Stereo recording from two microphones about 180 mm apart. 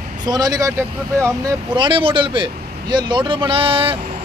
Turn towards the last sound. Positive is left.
turn(degrees=-30)  # may be behind; listen again after turning